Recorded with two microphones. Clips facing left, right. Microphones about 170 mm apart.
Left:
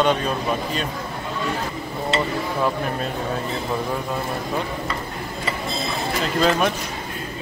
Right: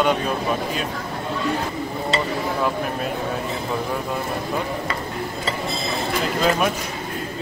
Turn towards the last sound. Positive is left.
turn(degrees=-5)  # may be behind; listen again after turning